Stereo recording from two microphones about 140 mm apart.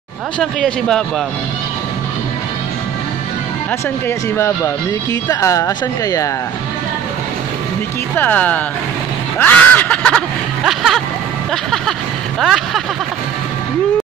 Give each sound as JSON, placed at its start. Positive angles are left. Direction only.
{"t": 0.4, "sound": "speech", "side_deg": 5}
{"t": 5.3, "sound": "speech", "side_deg": 20}
{"t": 8.2, "sound": "speech", "side_deg": 10}
{"t": 9.4, "sound": "snicker", "side_deg": 10}
{"t": 10.6, "sound": "speech", "side_deg": 0}
{"t": 12.4, "sound": "speech", "side_deg": 0}